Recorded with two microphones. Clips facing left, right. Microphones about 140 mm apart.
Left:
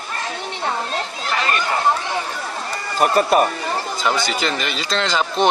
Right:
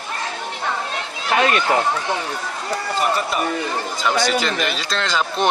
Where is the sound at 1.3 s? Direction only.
90° right.